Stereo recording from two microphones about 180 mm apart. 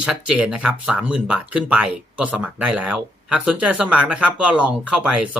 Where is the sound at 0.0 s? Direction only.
5° right (ahead or behind).